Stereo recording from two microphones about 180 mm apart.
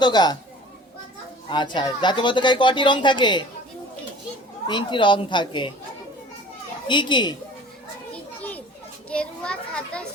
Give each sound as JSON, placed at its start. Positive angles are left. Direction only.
{"t": 0.0, "sound": "speech", "side_deg": 25}
{"t": 1.5, "sound": "speech", "side_deg": 25}
{"t": 4.6, "sound": "speech", "side_deg": 25}
{"t": 6.8, "sound": "speech", "side_deg": 25}
{"t": 8.1, "sound": "children playing", "side_deg": 10}